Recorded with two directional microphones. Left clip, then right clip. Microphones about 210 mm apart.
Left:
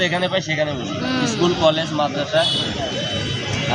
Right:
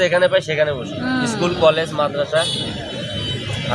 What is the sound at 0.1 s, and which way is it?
A man's voice, 30° right (ahead or behind).